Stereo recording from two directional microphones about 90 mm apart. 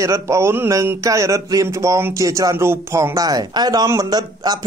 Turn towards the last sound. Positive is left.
turn(degrees=-45)  # may be behind; listen again after turning